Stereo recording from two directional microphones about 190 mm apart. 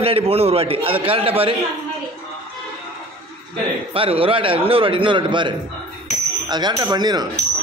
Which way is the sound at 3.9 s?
30° right (ahead or behind).